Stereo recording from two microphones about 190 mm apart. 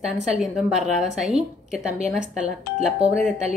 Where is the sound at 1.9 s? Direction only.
35° right (ahead or behind).